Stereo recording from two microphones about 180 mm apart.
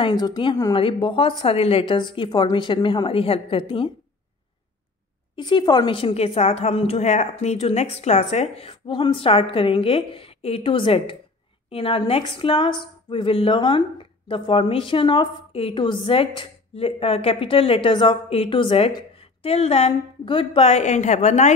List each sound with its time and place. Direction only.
0.0 s a woman's voice: 20° left (ahead or behind)
5.3 s a woman's voice: 25° left (ahead or behind)